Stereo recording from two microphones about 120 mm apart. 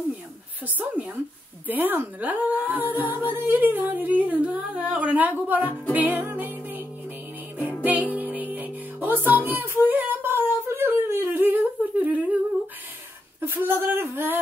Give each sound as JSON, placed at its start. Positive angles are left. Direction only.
{"t": 0.7, "sound": "speech", "side_deg": -15}
{"t": 5.9, "sound": "music", "side_deg": -15}
{"t": 7.8, "sound": "music", "side_deg": -15}
{"t": 13.4, "sound": "a woman's voice", "side_deg": -20}